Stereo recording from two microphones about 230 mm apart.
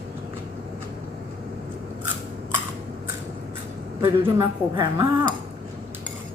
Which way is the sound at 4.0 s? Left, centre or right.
Centre.